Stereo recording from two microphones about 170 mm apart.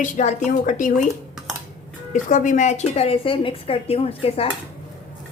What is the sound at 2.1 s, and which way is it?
A woman's voice, 50° left (ahead or behind).